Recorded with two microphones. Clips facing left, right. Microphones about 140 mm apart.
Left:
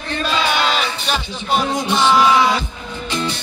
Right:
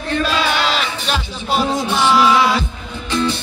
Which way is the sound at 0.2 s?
Centre (ahead or behind).